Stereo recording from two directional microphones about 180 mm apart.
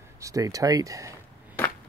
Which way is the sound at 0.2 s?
20° right (ahead or behind).